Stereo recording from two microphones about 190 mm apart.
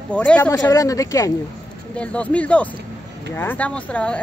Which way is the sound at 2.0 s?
5° left (ahead or behind).